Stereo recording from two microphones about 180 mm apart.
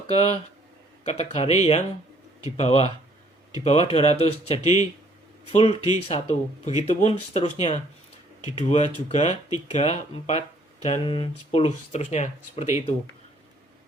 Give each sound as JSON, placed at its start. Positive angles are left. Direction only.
{"t": 0.1, "sound": "speech", "side_deg": 35}